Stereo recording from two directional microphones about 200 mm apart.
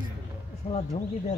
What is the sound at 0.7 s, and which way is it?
Speech, 30° left (ahead or behind).